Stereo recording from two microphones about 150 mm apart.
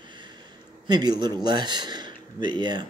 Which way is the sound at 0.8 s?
30° right (ahead or behind).